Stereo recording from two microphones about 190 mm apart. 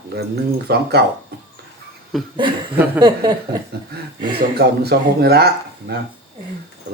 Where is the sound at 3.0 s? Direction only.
20° right (ahead or behind).